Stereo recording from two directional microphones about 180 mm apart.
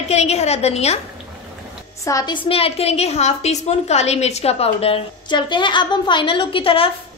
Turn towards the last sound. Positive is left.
turn(degrees=30)  # may be behind; listen again after turning